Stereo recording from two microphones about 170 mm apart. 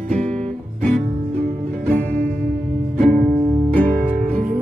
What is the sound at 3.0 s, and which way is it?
Music, 45° right (ahead or behind).